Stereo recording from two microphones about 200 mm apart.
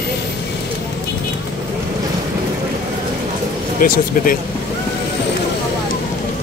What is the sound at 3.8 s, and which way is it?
Speech, 45° left (ahead or behind).